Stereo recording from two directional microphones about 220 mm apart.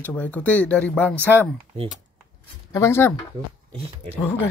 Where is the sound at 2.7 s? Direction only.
10° left (ahead or behind).